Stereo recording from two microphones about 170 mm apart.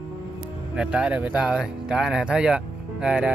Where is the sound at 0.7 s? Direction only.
5° right (ahead or behind).